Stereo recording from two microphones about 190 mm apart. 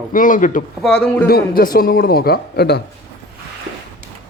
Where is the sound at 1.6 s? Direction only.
50° left (ahead or behind).